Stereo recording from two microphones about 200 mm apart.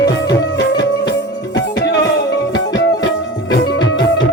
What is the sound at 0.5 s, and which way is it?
Music, 60° left (ahead or behind).